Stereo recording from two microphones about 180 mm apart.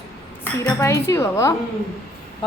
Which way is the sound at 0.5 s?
15° left (ahead or behind).